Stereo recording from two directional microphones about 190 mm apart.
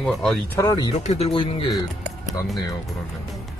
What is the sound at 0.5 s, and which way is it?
Speech, 20° left (ahead or behind).